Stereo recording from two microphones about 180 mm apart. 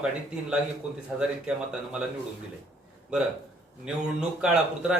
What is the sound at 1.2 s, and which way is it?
Speech, 5° right (ahead or behind).